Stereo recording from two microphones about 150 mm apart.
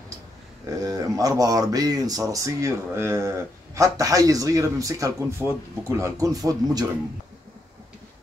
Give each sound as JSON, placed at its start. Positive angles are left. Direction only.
{"t": 0.7, "sound": "speech", "side_deg": -25}